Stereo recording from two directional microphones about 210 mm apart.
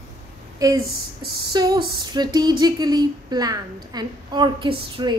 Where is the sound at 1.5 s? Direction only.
20° right (ahead or behind).